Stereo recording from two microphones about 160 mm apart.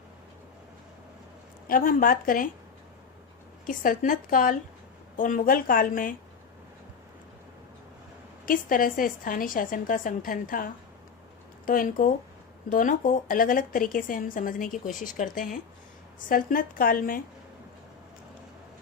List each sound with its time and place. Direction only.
1.6 s a woman's voice: 60° left (ahead or behind)
3.7 s a woman's voice: 60° left (ahead or behind)
8.4 s a woman's voice: 60° left (ahead or behind)